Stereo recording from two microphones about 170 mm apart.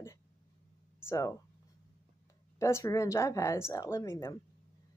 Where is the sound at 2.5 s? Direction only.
15° left (ahead or behind).